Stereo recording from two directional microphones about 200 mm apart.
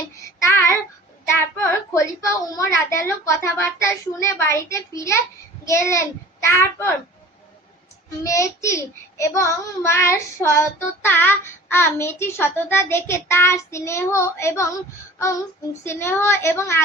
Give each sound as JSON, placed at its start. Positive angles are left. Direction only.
{"t": 0.4, "sound": "child singing", "side_deg": 10}
{"t": 1.3, "sound": "a child's voice", "side_deg": 15}
{"t": 8.2, "sound": "speech", "side_deg": 15}
{"t": 15.8, "sound": "speech", "side_deg": 10}